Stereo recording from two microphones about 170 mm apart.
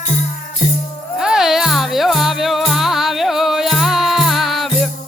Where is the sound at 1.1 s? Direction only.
5° right (ahead or behind).